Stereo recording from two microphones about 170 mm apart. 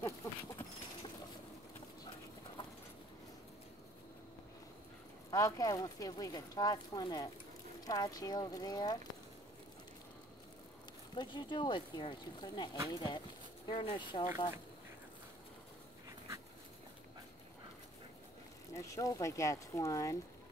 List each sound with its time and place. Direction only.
0.0 s horse: 15° left (ahead or behind)
5.3 s speech: 20° left (ahead or behind)
11.1 s speech: 25° left (ahead or behind)
12.7 s speech: 20° right (ahead or behind)
13.7 s speech: 30° left (ahead or behind)
18.7 s speech: 20° left (ahead or behind)